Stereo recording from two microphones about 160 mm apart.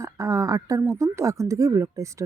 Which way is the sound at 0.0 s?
20° right (ahead or behind).